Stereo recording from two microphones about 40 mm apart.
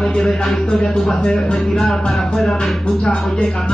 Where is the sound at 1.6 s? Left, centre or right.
Centre.